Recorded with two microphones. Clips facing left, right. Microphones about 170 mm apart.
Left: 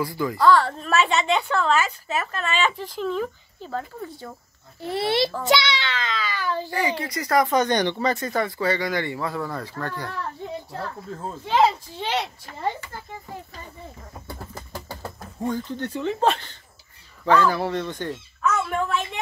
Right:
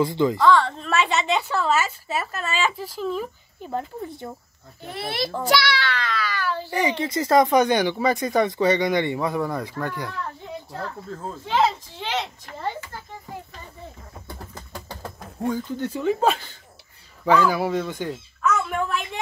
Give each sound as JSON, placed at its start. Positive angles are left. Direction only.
{"t": 0.0, "sound": "speech", "side_deg": -20}
{"t": 0.5, "sound": "a woman's voice", "side_deg": 0}
{"t": 4.0, "sound": "speech", "side_deg": -20}
{"t": 4.8, "sound": "a child's voice", "side_deg": 30}
{"t": 6.7, "sound": "speech", "side_deg": -20}
{"t": 7.5, "sound": "speech", "side_deg": -10}
{"t": 11.2, "sound": "speech", "side_deg": 10}
{"t": 14.5, "sound": "a sound", "side_deg": 5}
{"t": 15.4, "sound": "speech", "side_deg": -10}